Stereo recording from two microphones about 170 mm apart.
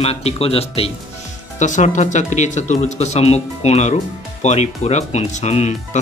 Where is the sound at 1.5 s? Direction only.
45° left (ahead or behind).